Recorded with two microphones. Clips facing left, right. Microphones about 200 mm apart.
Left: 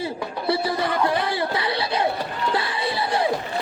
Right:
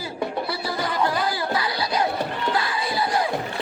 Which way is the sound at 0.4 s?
25° left (ahead or behind).